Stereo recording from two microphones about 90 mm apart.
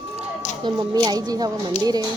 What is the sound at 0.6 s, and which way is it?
Speech, 50° right (ahead or behind).